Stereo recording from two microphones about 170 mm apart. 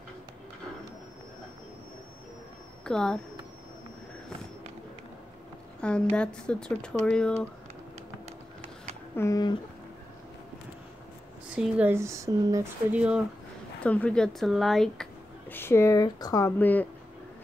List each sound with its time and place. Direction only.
2.8 s speech: 5° left (ahead or behind)
5.8 s a woman's voice: 5° left (ahead or behind)
9.1 s speech: 20° left (ahead or behind)
11.5 s speech: 10° right (ahead or behind)
12.9 s speech: 5° right (ahead or behind)
13.8 s speech: 5° left (ahead or behind)
15.5 s speech: 15° left (ahead or behind)